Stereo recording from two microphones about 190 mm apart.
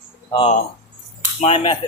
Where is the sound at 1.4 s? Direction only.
30° left (ahead or behind).